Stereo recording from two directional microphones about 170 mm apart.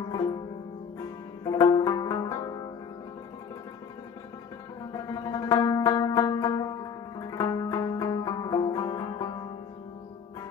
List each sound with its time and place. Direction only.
0.1 s music: 25° left (ahead or behind)
4.9 s music: 25° left (ahead or behind)